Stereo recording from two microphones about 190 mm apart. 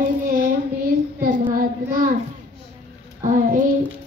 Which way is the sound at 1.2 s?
45° right (ahead or behind).